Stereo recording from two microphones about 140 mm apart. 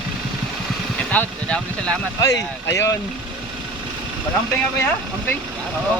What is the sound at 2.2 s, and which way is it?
Speech, 20° left (ahead or behind).